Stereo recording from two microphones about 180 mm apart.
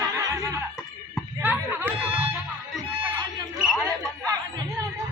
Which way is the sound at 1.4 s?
10° right (ahead or behind).